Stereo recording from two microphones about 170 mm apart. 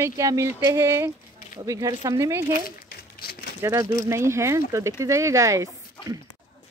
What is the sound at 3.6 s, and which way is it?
A woman's voice, 20° right (ahead or behind).